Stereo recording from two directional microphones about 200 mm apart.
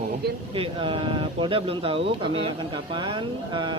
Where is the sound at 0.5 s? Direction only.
25° right (ahead or behind).